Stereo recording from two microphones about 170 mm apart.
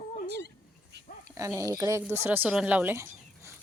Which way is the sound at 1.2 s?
20° right (ahead or behind).